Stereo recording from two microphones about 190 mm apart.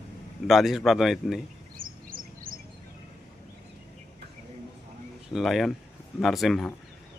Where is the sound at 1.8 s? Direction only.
50° right (ahead or behind).